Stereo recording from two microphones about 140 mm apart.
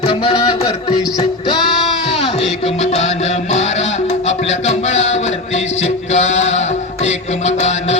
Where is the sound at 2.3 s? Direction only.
45° left (ahead or behind).